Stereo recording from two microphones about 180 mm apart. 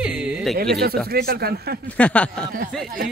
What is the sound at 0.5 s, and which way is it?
Speech, 60° right (ahead or behind).